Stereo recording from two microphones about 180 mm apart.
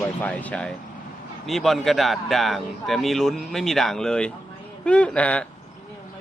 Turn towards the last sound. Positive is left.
turn(degrees=5)  # may be behind; listen again after turning